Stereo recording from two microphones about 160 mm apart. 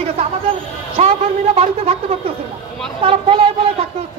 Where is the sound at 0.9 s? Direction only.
40° right (ahead or behind).